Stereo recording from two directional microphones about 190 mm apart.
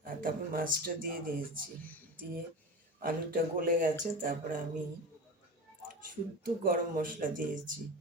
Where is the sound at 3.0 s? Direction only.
50° right (ahead or behind).